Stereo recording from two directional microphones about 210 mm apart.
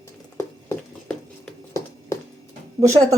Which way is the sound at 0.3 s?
10° left (ahead or behind).